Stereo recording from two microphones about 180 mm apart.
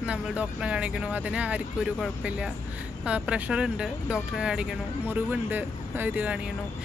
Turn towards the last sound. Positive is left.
turn(degrees=-10)  # may be behind; listen again after turning